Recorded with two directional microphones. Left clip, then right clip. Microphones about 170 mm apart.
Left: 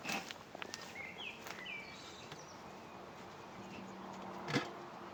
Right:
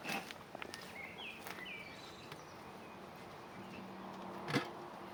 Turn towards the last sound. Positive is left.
turn(degrees=0)  # may be behind; listen again after turning